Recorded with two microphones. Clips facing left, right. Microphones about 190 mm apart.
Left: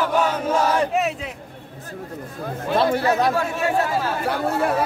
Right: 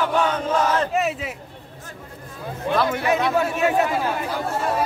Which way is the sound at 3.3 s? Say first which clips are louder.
Right 2 dB; 20° right (ahead or behind).